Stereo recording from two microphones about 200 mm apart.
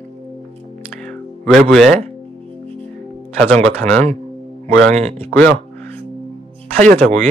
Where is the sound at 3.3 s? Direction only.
5° left (ahead or behind).